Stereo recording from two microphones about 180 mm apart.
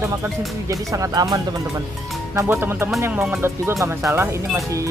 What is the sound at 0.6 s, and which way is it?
Speech, 20° right (ahead or behind).